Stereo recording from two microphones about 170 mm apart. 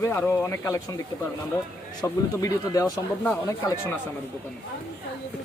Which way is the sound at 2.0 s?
20° left (ahead or behind).